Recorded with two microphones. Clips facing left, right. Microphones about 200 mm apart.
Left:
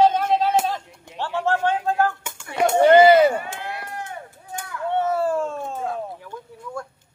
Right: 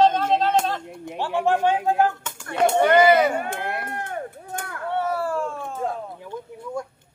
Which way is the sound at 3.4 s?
55° right (ahead or behind).